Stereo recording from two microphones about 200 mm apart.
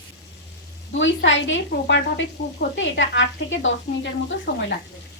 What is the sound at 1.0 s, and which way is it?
Speech, 65° left (ahead or behind).